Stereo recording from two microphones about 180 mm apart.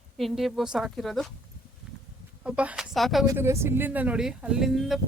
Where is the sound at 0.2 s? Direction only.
Centre (ahead or behind).